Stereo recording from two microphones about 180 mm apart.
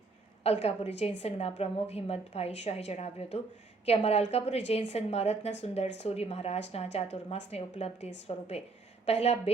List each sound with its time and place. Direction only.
0.4 s speech: 35° left (ahead or behind)